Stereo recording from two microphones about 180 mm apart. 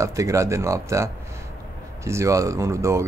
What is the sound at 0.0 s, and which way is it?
Speech, 15° right (ahead or behind).